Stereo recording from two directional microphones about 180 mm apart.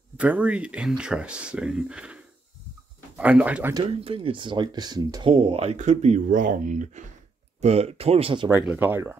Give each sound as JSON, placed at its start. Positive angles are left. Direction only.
{"t": 0.2, "sound": "speech", "side_deg": -5}
{"t": 4.0, "sound": "speech", "side_deg": -30}
{"t": 8.5, "sound": "speech", "side_deg": -10}